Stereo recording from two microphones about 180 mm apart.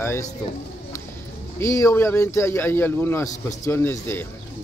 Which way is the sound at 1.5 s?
15° left (ahead or behind).